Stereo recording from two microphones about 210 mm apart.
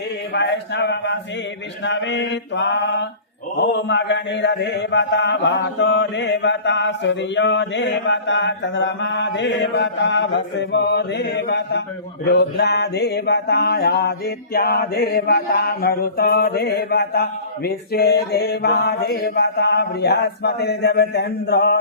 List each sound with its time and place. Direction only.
0.3 s mantra: 55° left (ahead or behind)